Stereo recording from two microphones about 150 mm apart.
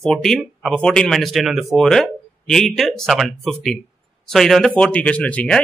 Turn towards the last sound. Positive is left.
turn(degrees=10)  # may be behind; listen again after turning